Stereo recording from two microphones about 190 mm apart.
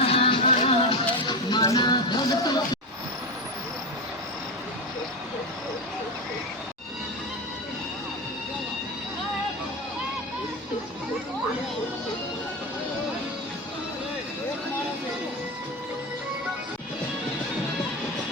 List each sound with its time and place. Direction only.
0.0 s music: 30° left (ahead or behind)